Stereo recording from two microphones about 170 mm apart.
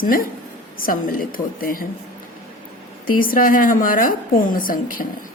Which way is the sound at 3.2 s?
55° left (ahead or behind).